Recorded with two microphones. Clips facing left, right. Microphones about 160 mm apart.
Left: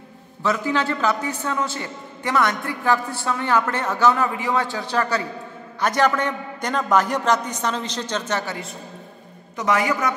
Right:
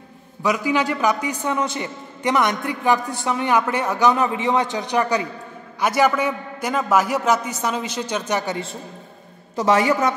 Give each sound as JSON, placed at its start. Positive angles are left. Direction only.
{"t": 0.4, "sound": "a man's voice", "side_deg": -10}
{"t": 9.6, "sound": "a woman's voice", "side_deg": -25}